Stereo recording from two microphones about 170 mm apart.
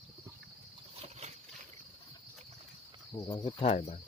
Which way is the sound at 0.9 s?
40° right (ahead or behind).